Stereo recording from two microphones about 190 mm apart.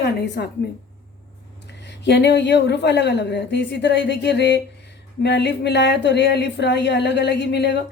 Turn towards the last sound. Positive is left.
turn(degrees=65)  # may be behind; listen again after turning